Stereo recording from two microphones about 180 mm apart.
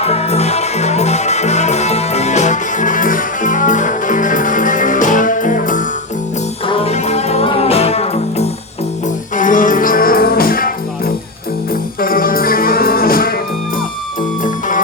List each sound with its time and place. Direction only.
0.0 s music: 35° left (ahead or behind)
6.7 s music: 35° left (ahead or behind)
9.3 s music: 45° left (ahead or behind)